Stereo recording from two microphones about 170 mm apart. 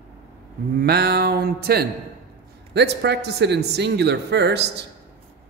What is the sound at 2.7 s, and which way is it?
Speech, 80° right.